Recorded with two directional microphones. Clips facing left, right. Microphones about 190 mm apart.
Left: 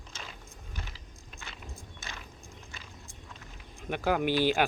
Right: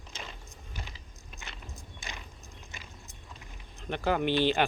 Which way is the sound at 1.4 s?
15° right (ahead or behind).